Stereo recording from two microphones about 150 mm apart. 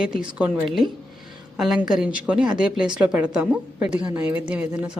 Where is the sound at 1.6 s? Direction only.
5° right (ahead or behind).